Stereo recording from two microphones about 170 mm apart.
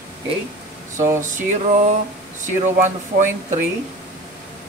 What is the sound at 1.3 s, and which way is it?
Speech, 45° right (ahead or behind).